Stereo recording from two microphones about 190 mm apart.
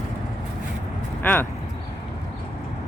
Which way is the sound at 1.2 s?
10° left (ahead or behind).